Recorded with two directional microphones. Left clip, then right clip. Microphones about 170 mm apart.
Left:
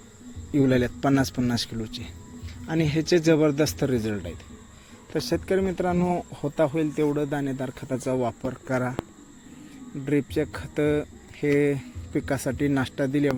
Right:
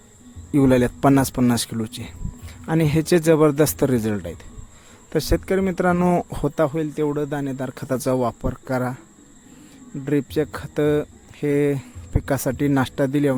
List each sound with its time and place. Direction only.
0.5 s speech: 50° right (ahead or behind)
5.1 s speech: 55° right (ahead or behind)
6.7 s speech: 40° right (ahead or behind)
7.8 s speech: 60° right (ahead or behind); by 9.0 s 35° right (ahead or behind)
10.1 s speech: 45° right (ahead or behind)